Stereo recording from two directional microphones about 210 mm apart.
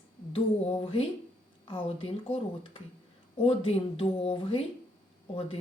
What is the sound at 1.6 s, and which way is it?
Speech, 25° left (ahead or behind).